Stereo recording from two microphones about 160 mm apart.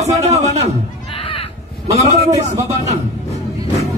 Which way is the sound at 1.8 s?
45° right (ahead or behind).